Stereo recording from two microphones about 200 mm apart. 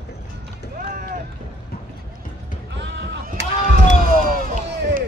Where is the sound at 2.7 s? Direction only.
60° right (ahead or behind).